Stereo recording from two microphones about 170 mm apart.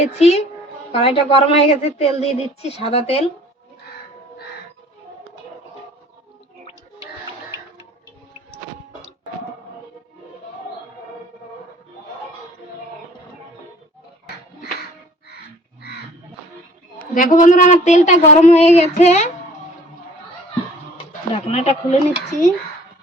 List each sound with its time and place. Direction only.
0.0 s a woman's voice: 40° left (ahead or behind)
17.2 s speech: 50° left (ahead or behind)
21.1 s speech: 40° left (ahead or behind)